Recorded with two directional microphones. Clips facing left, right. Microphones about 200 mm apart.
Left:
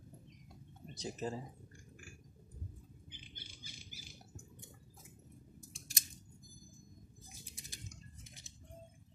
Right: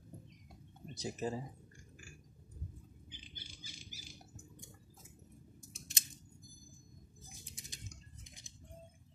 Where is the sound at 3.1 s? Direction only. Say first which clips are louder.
Right 2 dB; 55° left (ahead or behind).